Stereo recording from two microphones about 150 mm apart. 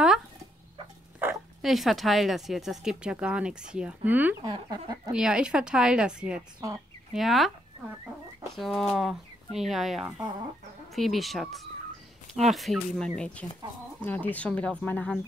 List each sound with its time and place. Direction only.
1.2 s dog: 15° right (ahead or behind)
1.6 s speech: centre (ahead or behind)
4.4 s speech: 25° right (ahead or behind)
5.1 s speech: 5° right (ahead or behind)
8.5 s speech: centre (ahead or behind)
10.0 s speech: 20° right (ahead or behind)
11.0 s speech: centre (ahead or behind)